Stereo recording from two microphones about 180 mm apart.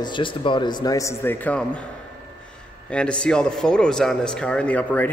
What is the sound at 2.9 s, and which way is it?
Speech, 5° left (ahead or behind).